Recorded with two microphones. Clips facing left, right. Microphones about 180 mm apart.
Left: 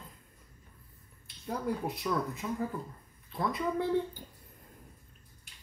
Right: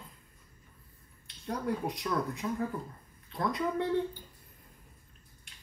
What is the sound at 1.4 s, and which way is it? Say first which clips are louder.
Speech: right 1 dB; 5° left (ahead or behind).